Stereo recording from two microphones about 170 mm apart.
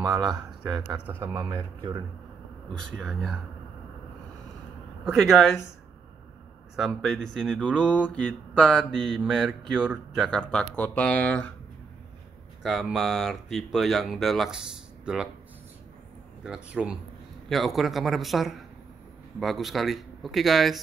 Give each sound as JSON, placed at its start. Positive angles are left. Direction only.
{"t": 0.0, "sound": "speech", "side_deg": -25}
{"t": 0.8, "sound": "mantra", "side_deg": -5}
{"t": 1.2, "sound": "speech", "side_deg": -15}
{"t": 3.0, "sound": "mantra", "side_deg": 0}
{"t": 5.0, "sound": "mantra", "side_deg": 0}
{"t": 6.8, "sound": "mantra", "side_deg": 0}
{"t": 12.6, "sound": "mantra", "side_deg": 0}
{"t": 16.4, "sound": "mantra", "side_deg": -5}